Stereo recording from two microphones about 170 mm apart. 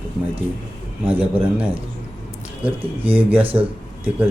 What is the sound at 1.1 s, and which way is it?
Speech, 10° right (ahead or behind).